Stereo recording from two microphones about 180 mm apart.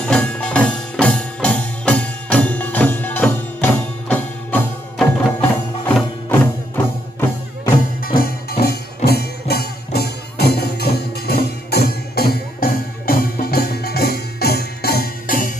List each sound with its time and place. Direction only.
0.0 s music: 5° left (ahead or behind)
8.0 s music: 55° left (ahead or behind)